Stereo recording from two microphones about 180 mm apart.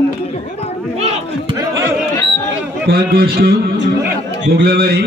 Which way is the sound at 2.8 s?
60° right (ahead or behind).